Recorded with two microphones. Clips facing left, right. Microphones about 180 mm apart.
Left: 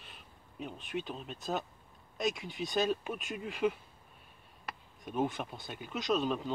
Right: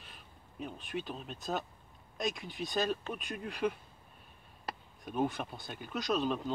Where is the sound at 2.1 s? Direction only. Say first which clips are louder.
Left 2 dB; centre (ahead or behind).